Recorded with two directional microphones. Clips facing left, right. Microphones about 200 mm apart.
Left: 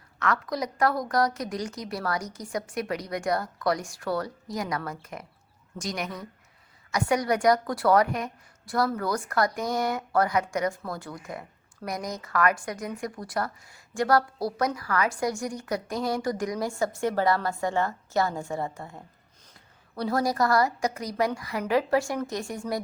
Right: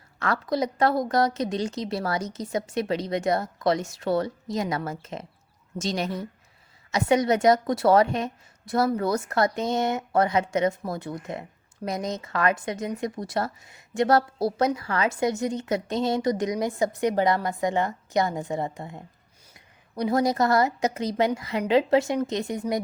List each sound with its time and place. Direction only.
0.2 s a woman's voice: 30° right (ahead or behind)